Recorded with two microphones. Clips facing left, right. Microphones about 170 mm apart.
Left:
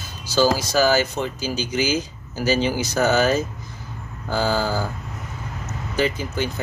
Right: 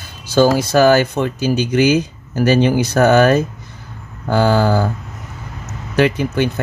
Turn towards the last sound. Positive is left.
turn(degrees=-60)  # may be behind; listen again after turning